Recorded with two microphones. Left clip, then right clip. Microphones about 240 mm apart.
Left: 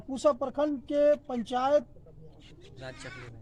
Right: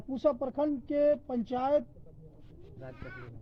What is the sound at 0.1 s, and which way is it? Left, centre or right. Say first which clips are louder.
Speech: left 3 dB; centre.